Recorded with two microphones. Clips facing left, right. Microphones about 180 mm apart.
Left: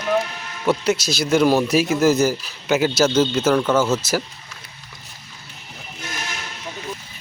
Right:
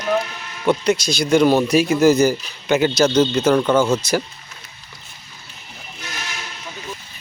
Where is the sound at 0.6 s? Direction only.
5° left (ahead or behind).